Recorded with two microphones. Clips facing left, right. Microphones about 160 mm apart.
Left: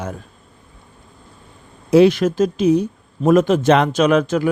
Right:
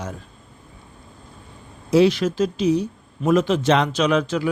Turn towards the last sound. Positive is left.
turn(degrees=50)  # may be behind; listen again after turning